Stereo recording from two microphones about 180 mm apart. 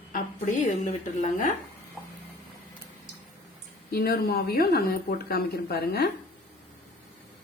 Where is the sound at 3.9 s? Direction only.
60° left (ahead or behind).